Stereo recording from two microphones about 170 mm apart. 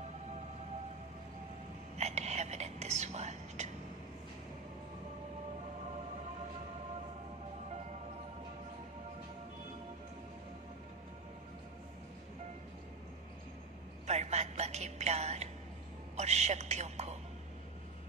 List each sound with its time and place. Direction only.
2.0 s whispering: 40° right (ahead or behind)
14.0 s a woman's voice: 40° right (ahead or behind)